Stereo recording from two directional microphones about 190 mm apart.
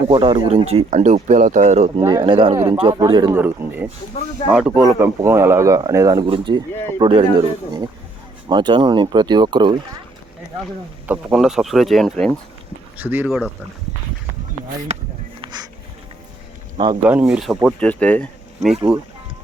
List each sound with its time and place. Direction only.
0.1 s speech: 30° right (ahead or behind)
2.0 s speech: 25° right (ahead or behind)
3.3 s speech: 10° right (ahead or behind)
11.0 s speech: 5° right (ahead or behind)
13.0 s speech: 10° right (ahead or behind)
15.4 s a sound: 20° right (ahead or behind)
16.7 s speech: 25° right (ahead or behind)
17.0 s speech: 10° right (ahead or behind)